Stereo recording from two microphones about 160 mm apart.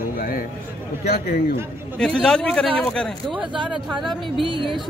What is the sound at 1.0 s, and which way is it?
Speech, 75° left (ahead or behind).